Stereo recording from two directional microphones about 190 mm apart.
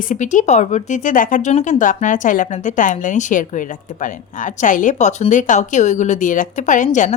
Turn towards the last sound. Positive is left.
turn(degrees=40)  # may be behind; listen again after turning